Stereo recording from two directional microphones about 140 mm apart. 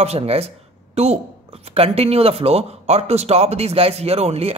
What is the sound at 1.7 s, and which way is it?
A man's voice, 45° right (ahead or behind).